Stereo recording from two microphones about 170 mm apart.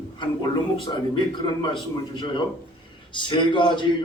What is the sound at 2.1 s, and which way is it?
A man's voice, 30° left (ahead or behind).